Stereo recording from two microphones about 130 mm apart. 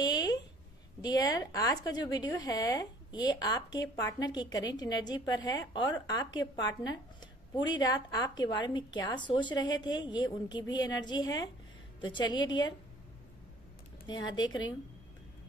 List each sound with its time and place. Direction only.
0.0 s a sound: 35° left (ahead or behind)
1.0 s speech: 30° left (ahead or behind)
14.0 s speech: 35° left (ahead or behind)